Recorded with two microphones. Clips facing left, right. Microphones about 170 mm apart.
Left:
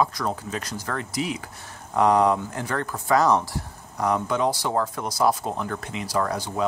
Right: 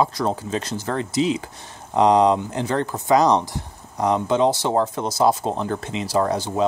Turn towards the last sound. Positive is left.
turn(degrees=-25)  # may be behind; listen again after turning